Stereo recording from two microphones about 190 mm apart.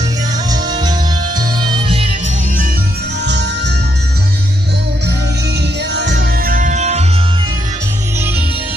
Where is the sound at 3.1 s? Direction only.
65° right (ahead or behind).